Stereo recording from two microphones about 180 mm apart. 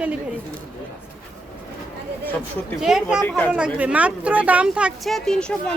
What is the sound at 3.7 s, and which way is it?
Speech, 10° right (ahead or behind).